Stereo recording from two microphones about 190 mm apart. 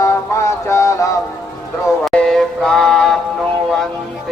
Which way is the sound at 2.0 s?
5° left (ahead or behind).